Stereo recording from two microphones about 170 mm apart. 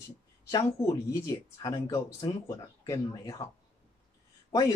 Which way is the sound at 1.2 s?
20° left (ahead or behind).